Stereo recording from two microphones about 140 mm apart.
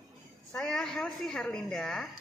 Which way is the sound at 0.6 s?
5° left (ahead or behind).